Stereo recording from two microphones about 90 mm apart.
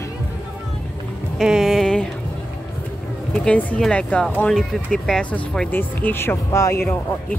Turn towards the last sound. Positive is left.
turn(degrees=30)  # may be behind; listen again after turning